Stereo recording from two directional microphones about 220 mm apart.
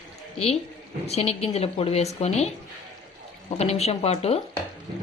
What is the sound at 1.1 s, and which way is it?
A woman's voice, 30° left (ahead or behind).